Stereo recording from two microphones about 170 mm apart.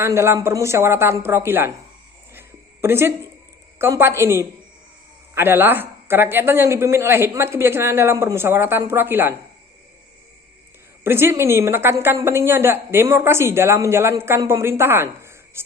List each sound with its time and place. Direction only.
0.0 s a woman's voice: 15° right (ahead or behind)
2.8 s a woman's voice: 15° right (ahead or behind)
11.0 s a woman's voice: 15° right (ahead or behind)